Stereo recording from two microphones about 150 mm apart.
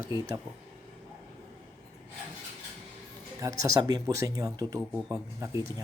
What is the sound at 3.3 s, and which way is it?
Speech, 20° right (ahead or behind).